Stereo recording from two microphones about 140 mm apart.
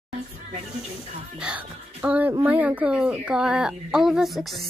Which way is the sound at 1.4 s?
10° right (ahead or behind).